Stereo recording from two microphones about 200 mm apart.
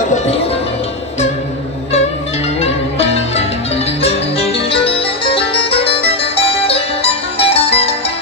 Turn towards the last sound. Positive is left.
turn(degrees=30)  # may be behind; listen again after turning